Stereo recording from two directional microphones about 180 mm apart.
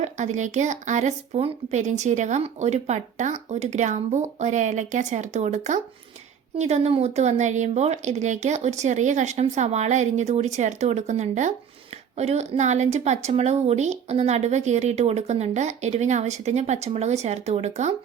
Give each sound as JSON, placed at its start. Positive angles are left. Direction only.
{"t": 0.0, "sound": "speech", "side_deg": -40}